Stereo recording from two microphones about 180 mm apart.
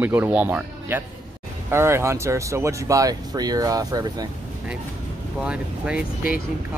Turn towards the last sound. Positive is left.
turn(degrees=-5)  # may be behind; listen again after turning